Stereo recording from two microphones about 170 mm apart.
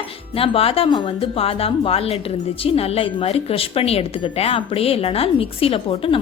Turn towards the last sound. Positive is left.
turn(degrees=30)  # may be behind; listen again after turning